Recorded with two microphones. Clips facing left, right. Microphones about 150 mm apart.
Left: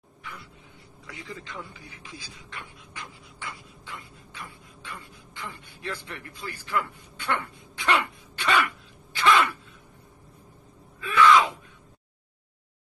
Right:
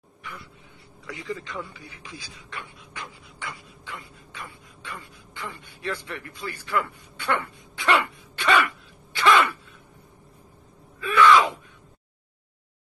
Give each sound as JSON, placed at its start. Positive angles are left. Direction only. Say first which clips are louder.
{"t": 1.2, "sound": "a man's voice", "louder": "right 6 dB", "side_deg": -85}
{"t": 3.0, "sound": "a sound", "louder": "right 3 dB", "side_deg": -75}
{"t": 5.4, "sound": "vehicle", "louder": "right 3 dB", "side_deg": -80}
{"t": 6.4, "sound": "throat clearing", "louder": "right 2 dB", "side_deg": -80}
{"t": 9.1, "sound": "a sound", "louder": "right 2 dB", "side_deg": -85}
{"t": 11.0, "sound": "wail", "louder": "right 2 dB", "side_deg": -75}